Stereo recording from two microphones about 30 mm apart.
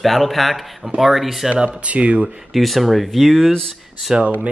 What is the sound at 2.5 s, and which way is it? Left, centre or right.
Speech, centre.